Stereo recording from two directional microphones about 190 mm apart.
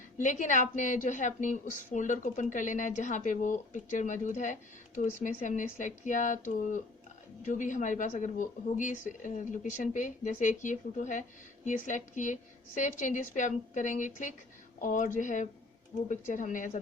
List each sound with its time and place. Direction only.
0.2 s speech: 40° left (ahead or behind)